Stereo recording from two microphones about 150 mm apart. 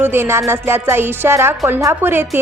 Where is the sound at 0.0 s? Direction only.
15° right (ahead or behind).